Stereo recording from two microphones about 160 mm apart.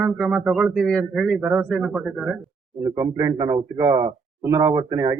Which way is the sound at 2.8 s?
20° right (ahead or behind).